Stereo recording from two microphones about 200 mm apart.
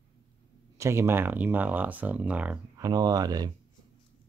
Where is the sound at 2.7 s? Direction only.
20° right (ahead or behind).